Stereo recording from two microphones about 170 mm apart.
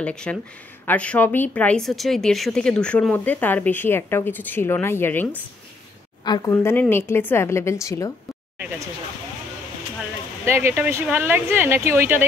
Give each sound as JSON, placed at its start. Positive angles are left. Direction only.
{"t": 0.0, "sound": "a woman's voice", "side_deg": 5}
{"t": 6.2, "sound": "speech", "side_deg": 25}
{"t": 6.5, "sound": "a woman's voice", "side_deg": 10}
{"t": 10.4, "sound": "speech", "side_deg": -15}